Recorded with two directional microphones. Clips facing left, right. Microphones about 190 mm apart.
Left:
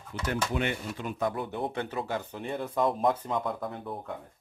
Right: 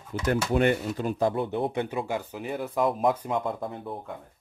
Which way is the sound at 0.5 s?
40° right (ahead or behind).